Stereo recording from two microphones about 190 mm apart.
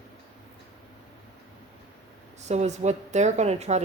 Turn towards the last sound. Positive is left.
turn(degrees=-35)  # may be behind; listen again after turning